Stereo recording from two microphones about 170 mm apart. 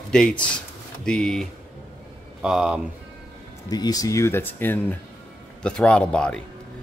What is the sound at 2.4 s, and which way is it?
Speech, 5° right (ahead or behind).